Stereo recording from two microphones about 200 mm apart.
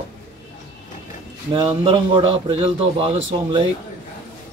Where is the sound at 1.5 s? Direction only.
25° right (ahead or behind).